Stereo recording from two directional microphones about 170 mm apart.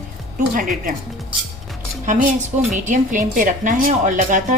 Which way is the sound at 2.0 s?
45° right (ahead or behind).